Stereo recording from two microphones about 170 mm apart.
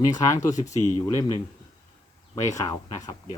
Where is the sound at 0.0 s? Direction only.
20° left (ahead or behind).